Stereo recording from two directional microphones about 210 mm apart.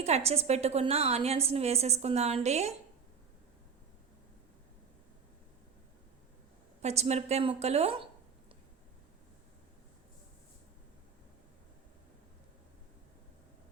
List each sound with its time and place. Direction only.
0.0 s a woman's voice: 30° right (ahead or behind)
6.8 s a woman's voice: 30° right (ahead or behind)